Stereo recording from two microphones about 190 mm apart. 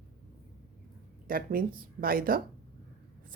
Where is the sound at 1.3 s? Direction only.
50° right (ahead or behind).